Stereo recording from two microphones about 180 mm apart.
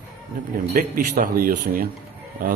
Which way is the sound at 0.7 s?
45° right (ahead or behind).